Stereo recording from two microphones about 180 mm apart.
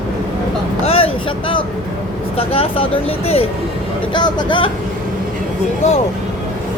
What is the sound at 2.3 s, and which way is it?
Speech, 30° left (ahead or behind).